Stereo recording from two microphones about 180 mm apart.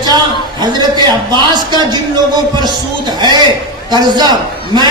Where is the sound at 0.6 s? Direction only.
25° right (ahead or behind).